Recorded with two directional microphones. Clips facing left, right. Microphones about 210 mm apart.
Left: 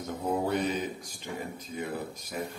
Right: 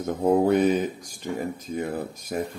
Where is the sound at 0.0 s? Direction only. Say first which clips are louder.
Right 9 dB; 55° right (ahead or behind).